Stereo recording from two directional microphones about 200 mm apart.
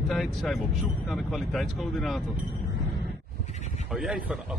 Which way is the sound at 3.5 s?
35° left (ahead or behind).